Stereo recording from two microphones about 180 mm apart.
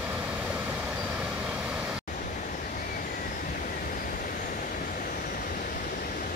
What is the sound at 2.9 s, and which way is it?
Vehicle, 50° left (ahead or behind).